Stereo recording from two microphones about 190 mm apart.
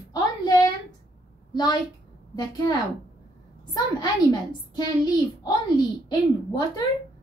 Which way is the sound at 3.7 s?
20° left (ahead or behind).